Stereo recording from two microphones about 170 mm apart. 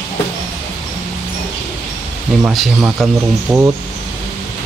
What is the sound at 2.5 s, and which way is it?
Speech, centre (ahead or behind).